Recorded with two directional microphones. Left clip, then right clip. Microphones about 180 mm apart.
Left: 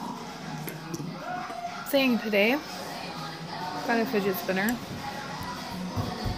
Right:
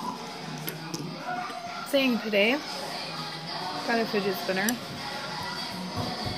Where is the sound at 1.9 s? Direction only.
5° left (ahead or behind).